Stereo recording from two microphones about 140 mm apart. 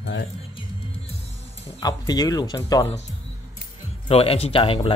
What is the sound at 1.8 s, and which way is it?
Speech, 25° left (ahead or behind).